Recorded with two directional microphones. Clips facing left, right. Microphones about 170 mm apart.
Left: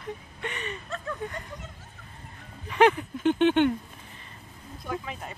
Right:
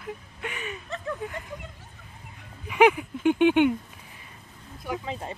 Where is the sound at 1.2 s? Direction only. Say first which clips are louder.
Even; 5° right (ahead or behind).